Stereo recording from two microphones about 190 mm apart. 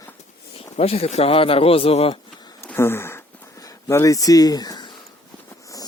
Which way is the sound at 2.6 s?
10° left (ahead or behind).